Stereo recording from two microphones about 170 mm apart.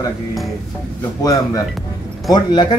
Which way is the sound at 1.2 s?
20° left (ahead or behind).